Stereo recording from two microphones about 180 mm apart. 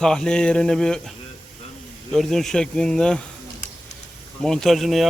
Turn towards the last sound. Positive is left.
turn(degrees=0)  # may be behind; listen again after turning